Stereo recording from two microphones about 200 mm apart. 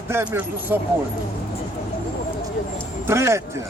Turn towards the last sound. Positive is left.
turn(degrees=-15)  # may be behind; listen again after turning